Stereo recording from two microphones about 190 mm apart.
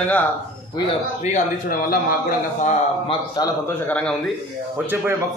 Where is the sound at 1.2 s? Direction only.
45° left (ahead or behind).